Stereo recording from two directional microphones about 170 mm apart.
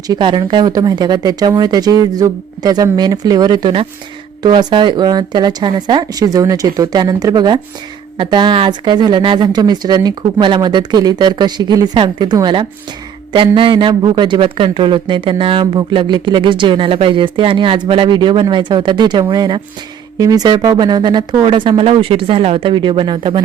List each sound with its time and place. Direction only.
0.1 s a man's voice: 30° right (ahead or behind)